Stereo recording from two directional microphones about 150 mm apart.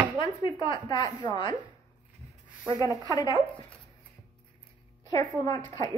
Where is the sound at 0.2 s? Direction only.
30° left (ahead or behind).